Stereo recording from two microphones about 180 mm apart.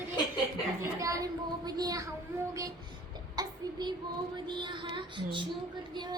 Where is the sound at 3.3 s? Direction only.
25° right (ahead or behind).